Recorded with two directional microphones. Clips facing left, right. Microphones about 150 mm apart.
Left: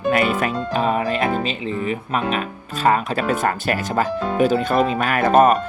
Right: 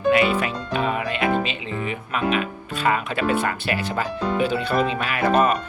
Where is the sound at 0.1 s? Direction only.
45° left (ahead or behind).